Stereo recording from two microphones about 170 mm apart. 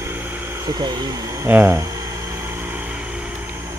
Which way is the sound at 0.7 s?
25° right (ahead or behind).